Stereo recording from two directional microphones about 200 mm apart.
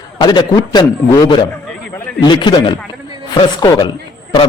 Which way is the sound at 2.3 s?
25° left (ahead or behind).